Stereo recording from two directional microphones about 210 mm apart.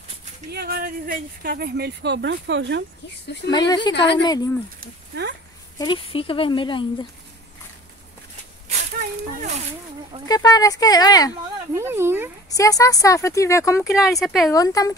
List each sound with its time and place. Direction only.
0.5 s speech: 50° right (ahead or behind)
3.4 s speech: 20° left (ahead or behind)
3.9 s a woman's voice: 55° left (ahead or behind)
4.2 s speech: 20° left (ahead or behind)
4.7 s speech: 50° right (ahead or behind)
5.8 s speech: 25° left (ahead or behind)
10.2 s speech: 15° left (ahead or behind)
11.7 s speech: 10° right (ahead or behind)
12.4 s speech: 15° left (ahead or behind)
13.8 s speech: centre (ahead or behind)
14.5 s speech: 15° left (ahead or behind)